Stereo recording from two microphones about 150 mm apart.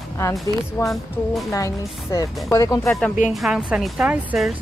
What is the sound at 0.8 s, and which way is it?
Speech, 20° left (ahead or behind).